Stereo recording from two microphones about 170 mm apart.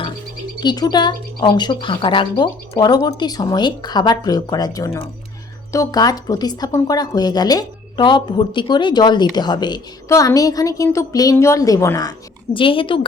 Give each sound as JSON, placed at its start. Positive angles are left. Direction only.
{"t": 0.6, "sound": "speech", "side_deg": 25}
{"t": 12.5, "sound": "speech", "side_deg": 30}